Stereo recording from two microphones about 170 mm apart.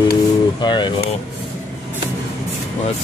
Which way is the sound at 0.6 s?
25° left (ahead or behind).